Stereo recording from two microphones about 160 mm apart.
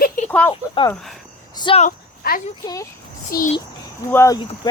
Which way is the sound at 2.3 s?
70° left (ahead or behind).